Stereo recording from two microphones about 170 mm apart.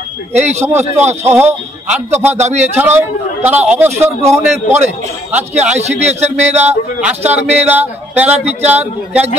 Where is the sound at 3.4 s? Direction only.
10° right (ahead or behind).